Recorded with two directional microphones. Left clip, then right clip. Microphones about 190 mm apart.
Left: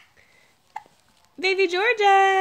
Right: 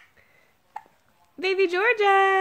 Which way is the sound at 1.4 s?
Centre (ahead or behind).